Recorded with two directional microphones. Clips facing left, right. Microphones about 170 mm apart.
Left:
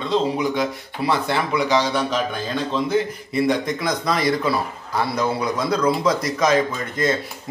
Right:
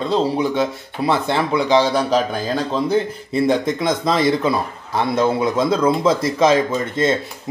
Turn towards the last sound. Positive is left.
turn(degrees=-25)  # may be behind; listen again after turning